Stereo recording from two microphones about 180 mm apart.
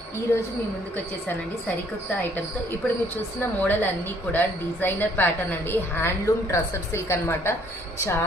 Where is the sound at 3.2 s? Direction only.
10° left (ahead or behind).